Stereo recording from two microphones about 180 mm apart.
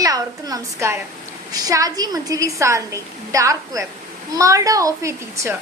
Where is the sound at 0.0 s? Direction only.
20° right (ahead or behind).